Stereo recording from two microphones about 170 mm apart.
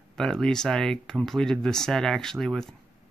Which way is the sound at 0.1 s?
5° left (ahead or behind).